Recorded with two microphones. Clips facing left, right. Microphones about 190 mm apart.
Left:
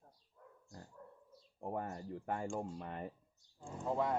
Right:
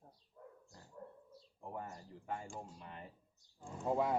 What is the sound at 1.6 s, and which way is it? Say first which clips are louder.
Speech: left 6 dB; 55° left (ahead or behind).